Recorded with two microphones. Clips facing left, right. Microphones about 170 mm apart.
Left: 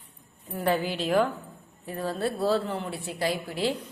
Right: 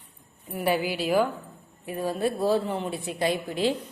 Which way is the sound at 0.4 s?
15° right (ahead or behind).